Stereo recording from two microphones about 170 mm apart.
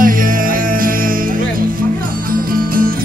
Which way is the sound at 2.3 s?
55° right (ahead or behind).